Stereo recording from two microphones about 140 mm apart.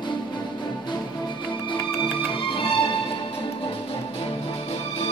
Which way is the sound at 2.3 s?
40° left (ahead or behind).